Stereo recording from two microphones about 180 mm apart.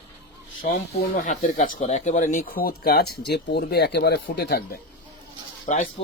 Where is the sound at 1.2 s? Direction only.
40° left (ahead or behind); by 4.8 s 60° left (ahead or behind).